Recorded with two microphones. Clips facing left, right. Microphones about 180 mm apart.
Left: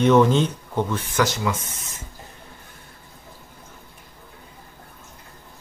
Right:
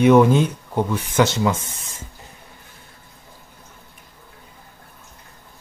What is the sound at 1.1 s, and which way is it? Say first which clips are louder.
Speech: right 5 dB; 25° right (ahead or behind).